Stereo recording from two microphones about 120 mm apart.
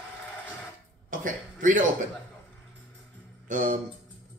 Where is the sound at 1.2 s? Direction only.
90° right.